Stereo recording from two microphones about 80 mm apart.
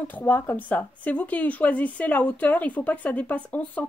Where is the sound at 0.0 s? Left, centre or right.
Left.